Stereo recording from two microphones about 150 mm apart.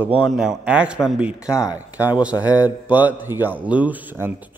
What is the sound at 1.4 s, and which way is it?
Speech, 20° left (ahead or behind).